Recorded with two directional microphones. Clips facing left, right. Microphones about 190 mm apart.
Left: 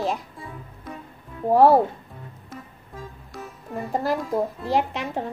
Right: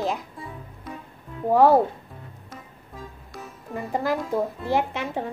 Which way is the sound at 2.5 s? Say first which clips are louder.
Left 3 dB; centre (ahead or behind).